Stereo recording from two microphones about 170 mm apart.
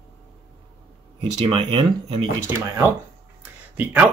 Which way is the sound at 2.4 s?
15° right (ahead or behind).